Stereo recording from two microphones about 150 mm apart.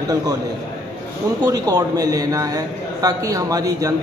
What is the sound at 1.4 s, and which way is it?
A man's voice, 25° right (ahead or behind).